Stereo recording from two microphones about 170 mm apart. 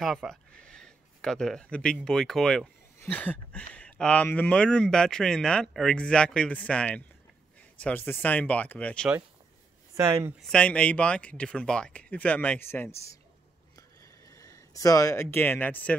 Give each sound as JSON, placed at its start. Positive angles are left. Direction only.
{"t": 0.0, "sound": "speech", "side_deg": 0}
{"t": 3.0, "sound": "a sound", "side_deg": 10}
{"t": 3.7, "sound": "speech", "side_deg": 5}
{"t": 9.9, "sound": "speech", "side_deg": -15}
{"t": 10.4, "sound": "speech", "side_deg": 5}
{"t": 13.7, "sound": "a sound", "side_deg": 20}